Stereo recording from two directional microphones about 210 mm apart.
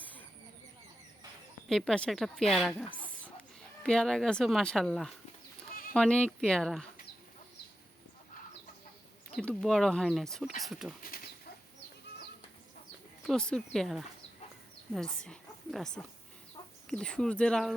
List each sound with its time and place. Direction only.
0.0 s a sound: 10° left (ahead or behind)
1.7 s a woman's voice: 5° left (ahead or behind)
9.3 s a woman's voice: 5° left (ahead or behind)
11.1 s bird: 45° left (ahead or behind)
13.2 s a woman's voice: 5° left (ahead or behind)